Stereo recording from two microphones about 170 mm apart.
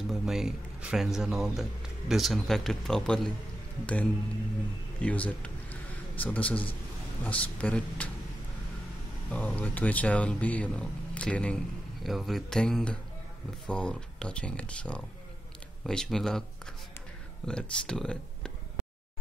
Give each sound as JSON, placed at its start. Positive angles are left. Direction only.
{"t": 0.1, "sound": "speech", "side_deg": 0}
{"t": 9.3, "sound": "speech", "side_deg": 10}
{"t": 17.5, "sound": "speech", "side_deg": 5}